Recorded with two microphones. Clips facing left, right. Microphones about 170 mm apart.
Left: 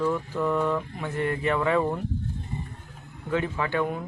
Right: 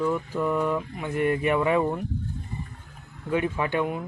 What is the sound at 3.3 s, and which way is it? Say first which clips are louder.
Speech: right 1 dB; 15° right (ahead or behind).